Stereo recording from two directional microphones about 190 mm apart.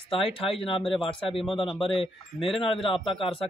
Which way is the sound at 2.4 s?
Centre (ahead or behind).